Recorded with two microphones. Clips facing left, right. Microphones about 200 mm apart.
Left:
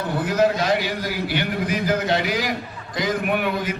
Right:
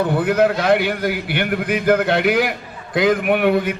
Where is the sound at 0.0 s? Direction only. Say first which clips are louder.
Right 4 dB; 55° right (ahead or behind).